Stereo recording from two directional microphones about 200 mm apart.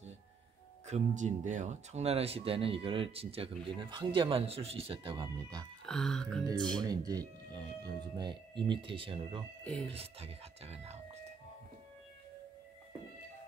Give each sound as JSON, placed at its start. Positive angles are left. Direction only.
{"t": 0.8, "sound": "speech", "side_deg": -35}
{"t": 5.9, "sound": "speech", "side_deg": 5}
{"t": 6.8, "sound": "speech", "side_deg": -20}
{"t": 9.7, "sound": "speech", "side_deg": 5}
{"t": 9.9, "sound": "speech", "side_deg": -30}